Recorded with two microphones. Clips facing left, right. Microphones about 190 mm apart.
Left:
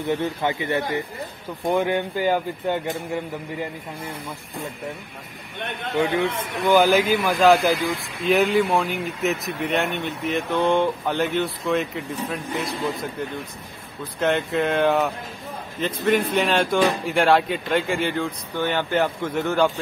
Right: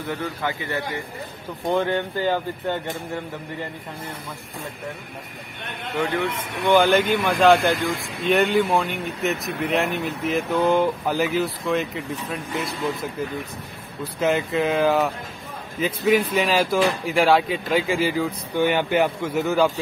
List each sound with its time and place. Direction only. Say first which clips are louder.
0.0 s a man's voice: left 4 dB; 20° left (ahead or behind)
6.6 s speech: even; 5° left (ahead or behind)
14.2 s speech: even; centre (ahead or behind)